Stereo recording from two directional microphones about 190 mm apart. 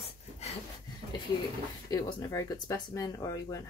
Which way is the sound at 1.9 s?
20° left (ahead or behind).